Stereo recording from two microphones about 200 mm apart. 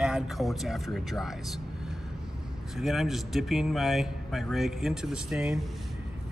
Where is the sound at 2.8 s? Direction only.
Centre (ahead or behind).